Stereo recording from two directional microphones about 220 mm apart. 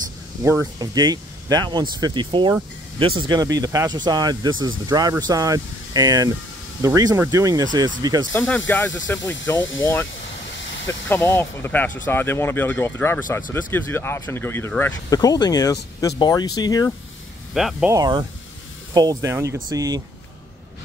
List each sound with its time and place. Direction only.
0.4 s speech: 15° right (ahead or behind)
8.3 s speech: 10° left (ahead or behind)
11.1 s speech: 10° left (ahead or behind)
17.6 s speech: centre (ahead or behind)
17.9 s speech: 20° right (ahead or behind)